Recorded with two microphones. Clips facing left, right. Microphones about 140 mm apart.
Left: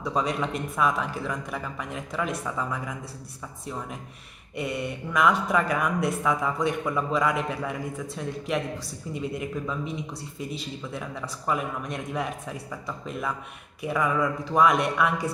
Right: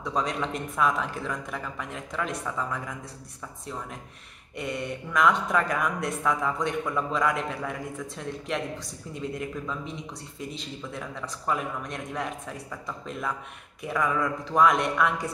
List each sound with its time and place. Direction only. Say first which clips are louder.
0.0 s speech: left 2 dB; 5° left (ahead or behind)
4.6 s speech: left 2 dB; 5° left (ahead or behind)